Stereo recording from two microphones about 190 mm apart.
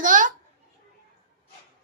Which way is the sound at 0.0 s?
45° right (ahead or behind).